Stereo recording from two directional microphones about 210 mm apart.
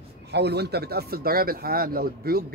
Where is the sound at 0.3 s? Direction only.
50° right (ahead or behind).